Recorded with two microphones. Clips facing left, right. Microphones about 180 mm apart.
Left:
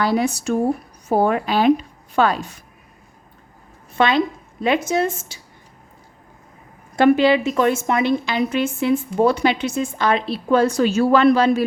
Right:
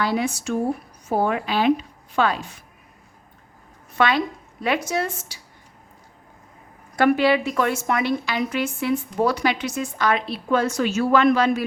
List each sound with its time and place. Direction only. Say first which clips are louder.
0.0 s a woman's voice: left 4 dB; 40° left (ahead or behind)
3.9 s a woman's voice: left 3 dB; 25° left (ahead or behind)
6.9 s a woman's voice: left 4 dB; 25° left (ahead or behind)